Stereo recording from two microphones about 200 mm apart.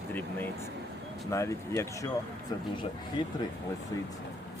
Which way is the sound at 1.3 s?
15° left (ahead or behind).